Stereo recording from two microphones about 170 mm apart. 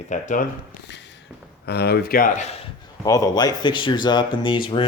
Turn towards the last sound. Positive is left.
turn(degrees=30)  # may be behind; listen again after turning